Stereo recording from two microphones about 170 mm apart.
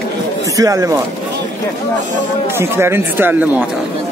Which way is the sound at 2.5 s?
15° right (ahead or behind).